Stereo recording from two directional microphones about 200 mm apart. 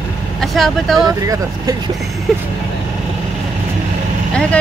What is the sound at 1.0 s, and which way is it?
Speech, 15° right (ahead or behind).